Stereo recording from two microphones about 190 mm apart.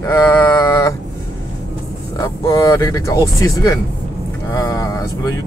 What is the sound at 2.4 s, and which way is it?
Speech, 20° left (ahead or behind).